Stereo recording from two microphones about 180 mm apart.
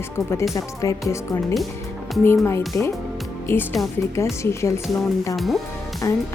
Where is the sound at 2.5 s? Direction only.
15° left (ahead or behind).